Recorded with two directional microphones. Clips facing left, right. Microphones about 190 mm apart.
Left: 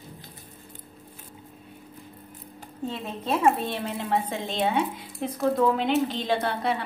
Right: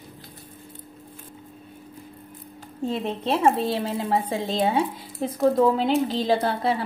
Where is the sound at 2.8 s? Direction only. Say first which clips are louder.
Right 4 dB; 30° right (ahead or behind).